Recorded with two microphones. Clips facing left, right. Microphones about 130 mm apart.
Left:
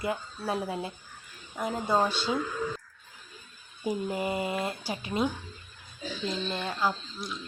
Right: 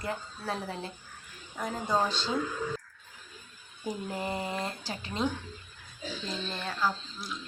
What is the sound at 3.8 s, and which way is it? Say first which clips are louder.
Speech: left 4 dB; 10° left (ahead or behind).